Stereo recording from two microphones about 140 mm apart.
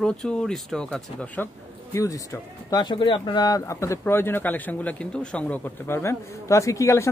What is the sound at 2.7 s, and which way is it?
Speech, 35° left (ahead or behind).